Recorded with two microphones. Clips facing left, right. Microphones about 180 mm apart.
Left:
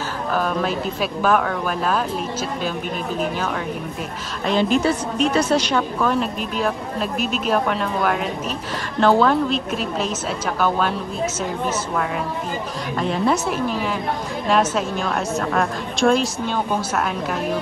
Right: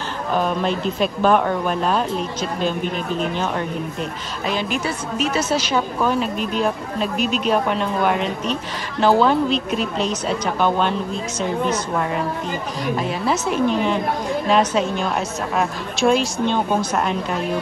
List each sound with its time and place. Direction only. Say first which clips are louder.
0.3 s a woman's voice: right 2 dB; centre (ahead or behind)
4.5 s a woman's voice: left 5 dB; 15° right (ahead or behind); by 11.0 s 5° left (ahead or behind)
13.0 s a woman's voice: left 5 dB; 5° right (ahead or behind)